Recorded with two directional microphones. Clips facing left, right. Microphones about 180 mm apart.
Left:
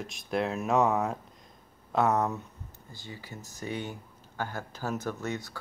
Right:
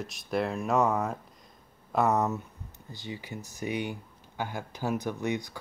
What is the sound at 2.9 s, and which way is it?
Speech, 20° right (ahead or behind).